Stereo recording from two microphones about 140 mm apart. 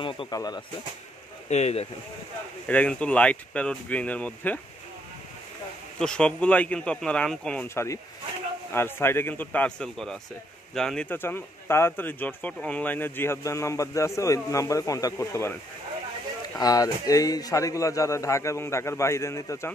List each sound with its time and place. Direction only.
0.0 s a man's voice: 40° left (ahead or behind)
1.5 s speech: 50° left (ahead or behind)
2.7 s speech: 10° left (ahead or behind)
5.9 s speech: 5° left (ahead or behind)
7.6 s a man's voice: 20° left (ahead or behind)
16.5 s a man's voice: 25° left (ahead or behind)